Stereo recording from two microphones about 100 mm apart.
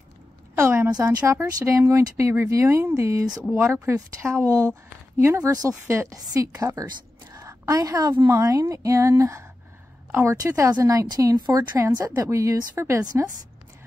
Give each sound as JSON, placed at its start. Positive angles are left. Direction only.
{"t": 0.6, "sound": "a woman's voice", "side_deg": -25}
{"t": 7.3, "sound": "a sound", "side_deg": -30}
{"t": 8.3, "sound": "speech", "side_deg": -30}
{"t": 11.8, "sound": "speech", "side_deg": -30}